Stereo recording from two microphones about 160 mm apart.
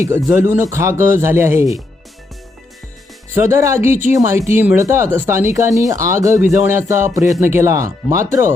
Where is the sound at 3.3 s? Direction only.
15° right (ahead or behind).